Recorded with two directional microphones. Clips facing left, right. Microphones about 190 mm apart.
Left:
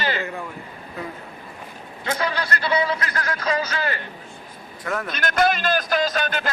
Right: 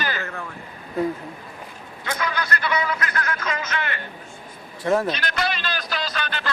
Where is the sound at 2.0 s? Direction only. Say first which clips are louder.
Left 2 dB; 30° left (ahead or behind).